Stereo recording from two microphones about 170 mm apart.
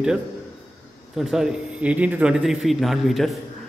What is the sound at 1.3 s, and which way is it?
A man's voice, 5° right (ahead or behind).